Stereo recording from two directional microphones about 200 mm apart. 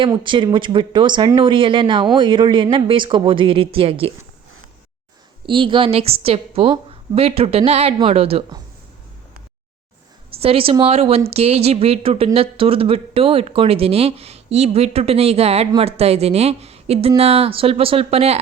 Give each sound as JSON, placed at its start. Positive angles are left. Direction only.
{"t": 0.0, "sound": "a woman's voice", "side_deg": -25}
{"t": 5.5, "sound": "a woman's voice", "side_deg": -25}
{"t": 10.3, "sound": "a woman's voice", "side_deg": -30}